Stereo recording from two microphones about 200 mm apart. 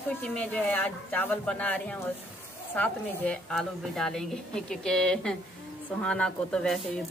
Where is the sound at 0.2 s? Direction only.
5° left (ahead or behind).